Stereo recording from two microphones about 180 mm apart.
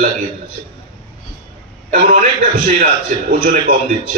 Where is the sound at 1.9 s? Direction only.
45° right (ahead or behind).